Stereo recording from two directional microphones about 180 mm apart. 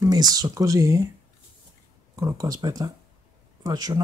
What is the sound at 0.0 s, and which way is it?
Speech, 20° right (ahead or behind).